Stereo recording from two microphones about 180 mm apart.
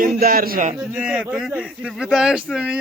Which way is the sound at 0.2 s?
55° right (ahead or behind).